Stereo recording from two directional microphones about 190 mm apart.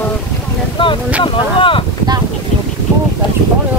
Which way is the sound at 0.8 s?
25° left (ahead or behind).